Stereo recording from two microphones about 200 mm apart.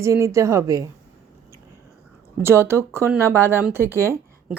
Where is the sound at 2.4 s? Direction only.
10° right (ahead or behind).